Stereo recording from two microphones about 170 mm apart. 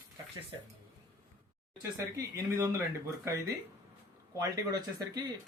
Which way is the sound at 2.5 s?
15° right (ahead or behind).